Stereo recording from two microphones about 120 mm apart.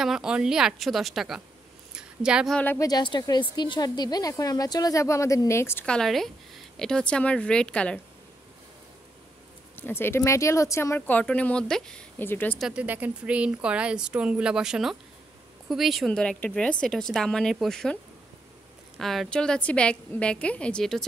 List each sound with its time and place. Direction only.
0.0 s a woman's voice: 5° right (ahead or behind)
2.0 s a sound: 5° right (ahead or behind)
2.5 s a woman's voice: 15° left (ahead or behind)
2.8 s a woman's voice: 35° left (ahead or behind)
5.9 s a woman's voice: 5° left (ahead or behind)
9.8 s speech: 20° left (ahead or behind)
11.0 s a woman's voice: 15° left (ahead or behind)
12.2 s a woman's voice: 15° left (ahead or behind)
12.5 s a woman's voice: 5° right (ahead or behind)
18.9 s a woman's voice: centre (ahead or behind)